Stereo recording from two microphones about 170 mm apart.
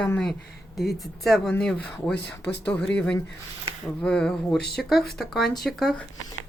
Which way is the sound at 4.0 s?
5° left (ahead or behind).